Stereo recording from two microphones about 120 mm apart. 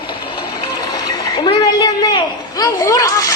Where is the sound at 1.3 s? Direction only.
40° left (ahead or behind).